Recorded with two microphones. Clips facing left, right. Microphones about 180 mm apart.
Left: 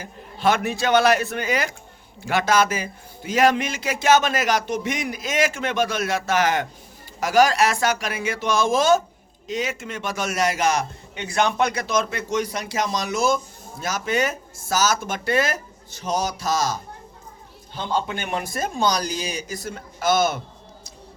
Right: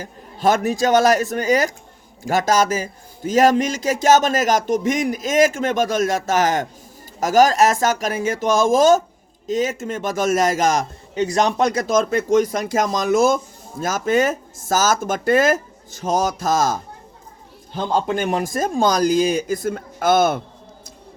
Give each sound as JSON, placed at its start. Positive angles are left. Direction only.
{"t": 0.0, "sound": "a man's voice", "side_deg": -40}